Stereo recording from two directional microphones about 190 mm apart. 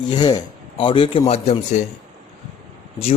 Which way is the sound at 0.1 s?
20° left (ahead or behind).